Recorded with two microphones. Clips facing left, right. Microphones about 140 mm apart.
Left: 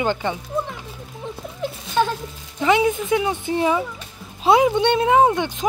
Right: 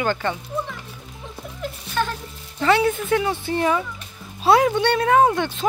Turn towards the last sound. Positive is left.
turn(degrees=15)  # may be behind; listen again after turning